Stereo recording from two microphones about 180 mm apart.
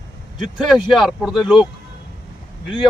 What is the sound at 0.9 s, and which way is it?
Speech, centre (ahead or behind).